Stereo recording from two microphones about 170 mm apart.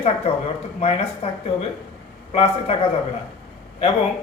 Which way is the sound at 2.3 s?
35° left (ahead or behind).